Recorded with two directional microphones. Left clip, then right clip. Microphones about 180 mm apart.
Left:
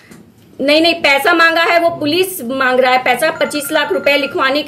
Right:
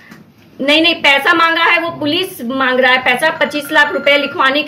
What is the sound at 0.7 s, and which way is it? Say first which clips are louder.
A woman's voice: even; 15° left (ahead or behind).